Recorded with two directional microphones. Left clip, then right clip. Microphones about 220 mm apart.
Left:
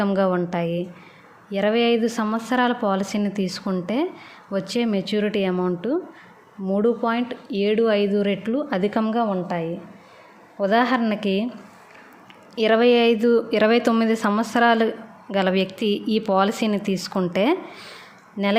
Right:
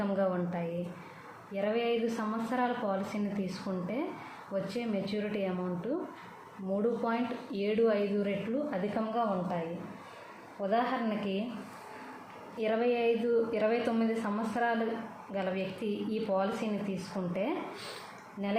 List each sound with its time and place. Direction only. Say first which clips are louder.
0.0 s speech: left 10 dB; 50° left (ahead or behind)
10.6 s speech: left 11 dB; 50° left (ahead or behind)
12.5 s speech: left 13 dB; 45° left (ahead or behind)